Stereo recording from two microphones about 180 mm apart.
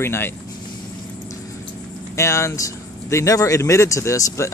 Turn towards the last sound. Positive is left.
turn(degrees=15)  # may be behind; listen again after turning